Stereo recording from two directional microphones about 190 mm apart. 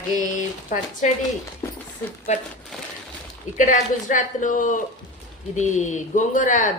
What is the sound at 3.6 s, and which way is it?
A woman's voice, 45° left (ahead or behind).